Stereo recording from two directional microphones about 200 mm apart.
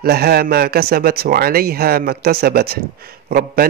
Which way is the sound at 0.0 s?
50° right (ahead or behind).